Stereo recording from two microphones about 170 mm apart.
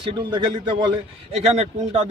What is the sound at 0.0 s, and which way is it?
A man's voice, 30° right (ahead or behind).